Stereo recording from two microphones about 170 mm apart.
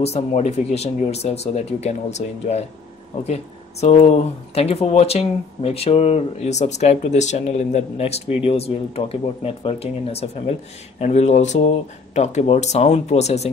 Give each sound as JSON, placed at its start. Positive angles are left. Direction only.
{"t": 0.0, "sound": "speech", "side_deg": 40}
{"t": 3.8, "sound": "speech", "side_deg": 40}